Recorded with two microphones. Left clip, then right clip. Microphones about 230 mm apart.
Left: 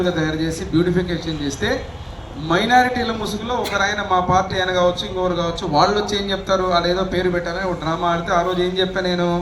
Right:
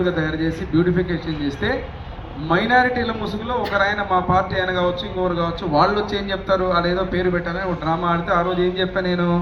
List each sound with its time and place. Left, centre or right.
0.0 s a man's voice: left